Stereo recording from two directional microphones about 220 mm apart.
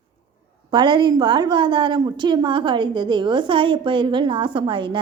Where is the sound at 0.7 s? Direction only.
20° right (ahead or behind).